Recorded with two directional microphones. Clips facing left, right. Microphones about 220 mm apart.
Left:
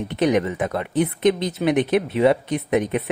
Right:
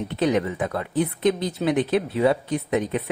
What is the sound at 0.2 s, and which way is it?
Speech, 20° left (ahead or behind).